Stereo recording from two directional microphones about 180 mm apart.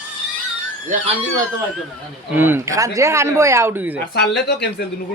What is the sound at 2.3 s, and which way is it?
Speech, 10° right (ahead or behind).